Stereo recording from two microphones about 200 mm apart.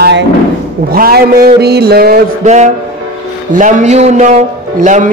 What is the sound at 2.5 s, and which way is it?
A man's voice, 35° right (ahead or behind).